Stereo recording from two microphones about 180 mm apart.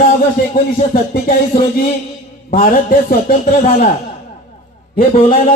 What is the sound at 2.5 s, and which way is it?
A man's voice, 50° left (ahead or behind).